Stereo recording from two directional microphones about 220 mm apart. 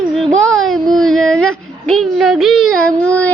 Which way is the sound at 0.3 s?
Centre (ahead or behind).